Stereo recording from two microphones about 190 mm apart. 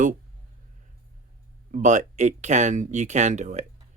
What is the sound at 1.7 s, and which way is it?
Speech, 40° right (ahead or behind).